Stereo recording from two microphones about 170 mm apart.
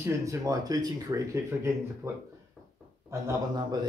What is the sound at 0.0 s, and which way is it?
Speech, 20° right (ahead or behind).